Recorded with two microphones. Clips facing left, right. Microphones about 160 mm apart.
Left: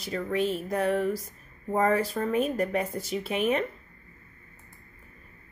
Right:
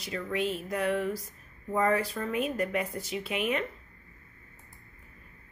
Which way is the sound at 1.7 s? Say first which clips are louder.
Left 3 dB; 35° left (ahead or behind).